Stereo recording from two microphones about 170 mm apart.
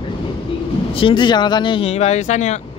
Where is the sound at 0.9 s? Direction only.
30° left (ahead or behind).